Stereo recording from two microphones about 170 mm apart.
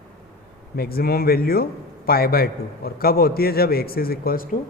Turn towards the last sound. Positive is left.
turn(degrees=55)  # may be behind; listen again after turning